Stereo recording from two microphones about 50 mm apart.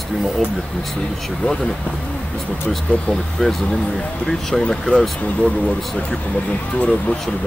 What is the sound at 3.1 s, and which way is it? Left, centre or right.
Speech, centre.